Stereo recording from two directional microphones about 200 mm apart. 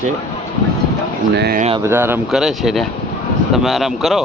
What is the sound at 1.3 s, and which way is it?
Speech, 50° right (ahead or behind).